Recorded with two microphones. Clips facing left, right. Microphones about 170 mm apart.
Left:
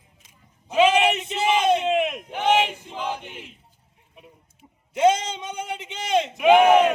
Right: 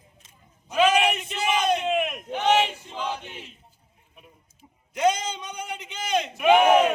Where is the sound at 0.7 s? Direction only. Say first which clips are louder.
Left 2 dB; 25° left (ahead or behind).